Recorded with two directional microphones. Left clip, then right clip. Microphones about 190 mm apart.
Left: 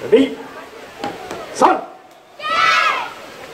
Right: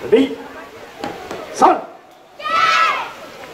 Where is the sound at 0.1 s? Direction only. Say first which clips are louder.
Left 1 dB; 15° right (ahead or behind).